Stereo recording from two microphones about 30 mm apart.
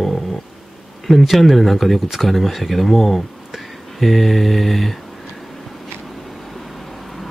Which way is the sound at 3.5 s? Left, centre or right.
Centre.